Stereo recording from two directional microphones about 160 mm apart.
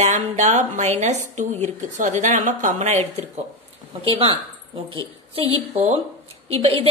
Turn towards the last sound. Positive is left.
turn(degrees=-40)  # may be behind; listen again after turning